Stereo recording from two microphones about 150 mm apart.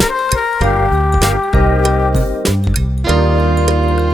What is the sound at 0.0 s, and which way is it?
Music, centre (ahead or behind).